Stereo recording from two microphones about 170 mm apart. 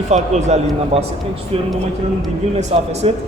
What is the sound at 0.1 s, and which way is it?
Speech, 40° right (ahead or behind).